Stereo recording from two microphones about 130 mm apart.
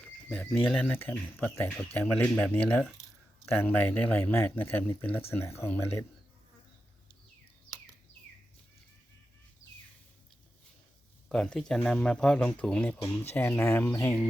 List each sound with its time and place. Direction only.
0.3 s speech: 10° left (ahead or behind)
11.3 s speech: 5° left (ahead or behind)